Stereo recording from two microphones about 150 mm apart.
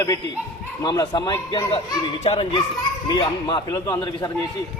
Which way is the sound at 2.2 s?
40° left (ahead or behind).